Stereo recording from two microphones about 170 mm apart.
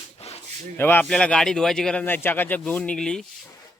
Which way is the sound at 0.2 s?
40° left (ahead or behind).